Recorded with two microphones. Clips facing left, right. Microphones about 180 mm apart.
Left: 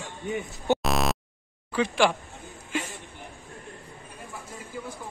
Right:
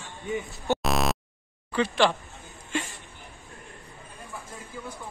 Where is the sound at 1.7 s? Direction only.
10° left (ahead or behind).